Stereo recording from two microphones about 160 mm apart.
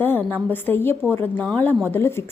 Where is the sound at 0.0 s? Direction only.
10° left (ahead or behind).